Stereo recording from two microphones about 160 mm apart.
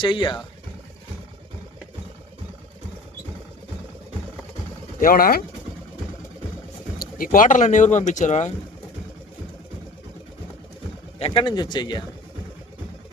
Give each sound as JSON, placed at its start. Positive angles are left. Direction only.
{"t": 0.0, "sound": "speech", "side_deg": 30}
{"t": 4.9, "sound": "speech", "side_deg": 65}
{"t": 7.0, "sound": "speech", "side_deg": 60}
{"t": 11.2, "sound": "speech", "side_deg": 30}